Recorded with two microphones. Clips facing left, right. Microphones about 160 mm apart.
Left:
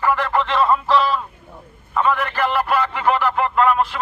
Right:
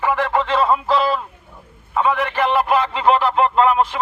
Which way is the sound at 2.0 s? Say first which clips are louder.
Right 1 dB; 15° right (ahead or behind).